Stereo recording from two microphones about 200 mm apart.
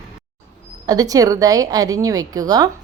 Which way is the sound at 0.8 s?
20° right (ahead or behind).